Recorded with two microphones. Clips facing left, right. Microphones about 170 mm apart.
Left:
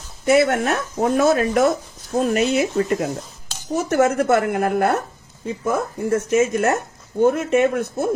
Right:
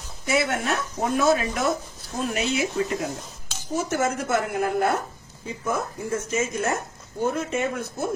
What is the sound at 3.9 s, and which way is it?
Speech, 65° left (ahead or behind).